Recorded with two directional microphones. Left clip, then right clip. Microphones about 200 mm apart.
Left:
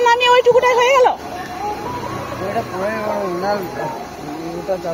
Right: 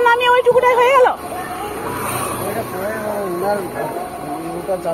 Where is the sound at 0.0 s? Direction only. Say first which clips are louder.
Left 1 dB; 60° left (ahead or behind).